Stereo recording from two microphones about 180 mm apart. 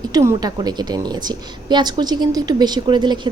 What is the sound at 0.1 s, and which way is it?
A woman's voice, 20° right (ahead or behind).